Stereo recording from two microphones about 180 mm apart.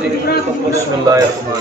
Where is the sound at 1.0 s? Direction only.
20° right (ahead or behind).